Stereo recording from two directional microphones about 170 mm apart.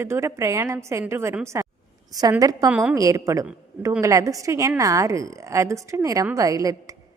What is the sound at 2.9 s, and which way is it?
A woman's voice, 20° right (ahead or behind).